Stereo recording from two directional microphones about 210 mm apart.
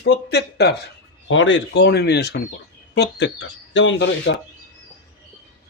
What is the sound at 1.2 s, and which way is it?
A man's voice, 65° left (ahead or behind).